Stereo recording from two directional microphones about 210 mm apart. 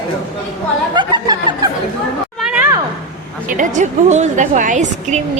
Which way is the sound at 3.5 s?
35° right (ahead or behind).